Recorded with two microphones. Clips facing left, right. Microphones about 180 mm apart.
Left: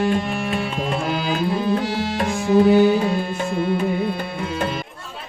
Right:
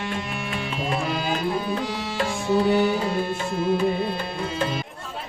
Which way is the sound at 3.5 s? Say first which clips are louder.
Left 1 dB; 55° left (ahead or behind).